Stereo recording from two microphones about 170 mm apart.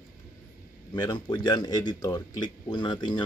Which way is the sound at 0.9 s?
25° left (ahead or behind).